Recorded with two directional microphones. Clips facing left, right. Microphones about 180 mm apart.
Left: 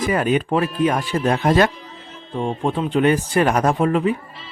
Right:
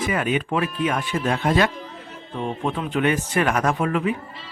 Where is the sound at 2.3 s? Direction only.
30° left (ahead or behind).